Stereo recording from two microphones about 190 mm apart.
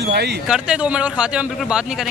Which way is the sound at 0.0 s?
60° right (ahead or behind).